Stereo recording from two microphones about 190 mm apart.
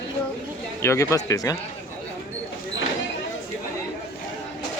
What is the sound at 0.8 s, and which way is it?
Speech, 15° left (ahead or behind).